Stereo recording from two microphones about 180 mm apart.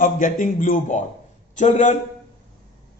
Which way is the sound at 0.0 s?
45° left (ahead or behind).